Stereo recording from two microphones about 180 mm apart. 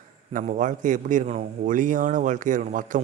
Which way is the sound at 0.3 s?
45° right (ahead or behind).